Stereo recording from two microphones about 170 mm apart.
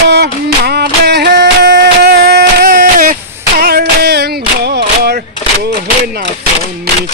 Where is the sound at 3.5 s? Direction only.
65° right (ahead or behind).